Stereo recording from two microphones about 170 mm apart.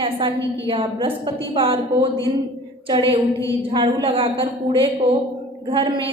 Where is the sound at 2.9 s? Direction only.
30° right (ahead or behind).